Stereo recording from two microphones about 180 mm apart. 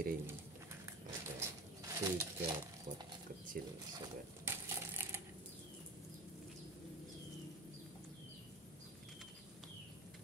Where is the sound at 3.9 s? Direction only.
20° right (ahead or behind).